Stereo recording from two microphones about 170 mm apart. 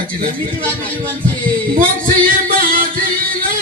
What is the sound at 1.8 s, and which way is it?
Speech, 55° right (ahead or behind).